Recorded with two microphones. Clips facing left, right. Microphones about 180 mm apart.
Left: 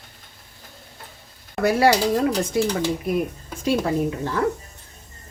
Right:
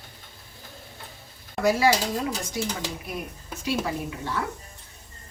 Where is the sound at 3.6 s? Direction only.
45° left (ahead or behind).